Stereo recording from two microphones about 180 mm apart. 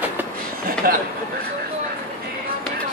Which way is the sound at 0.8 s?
55° right (ahead or behind).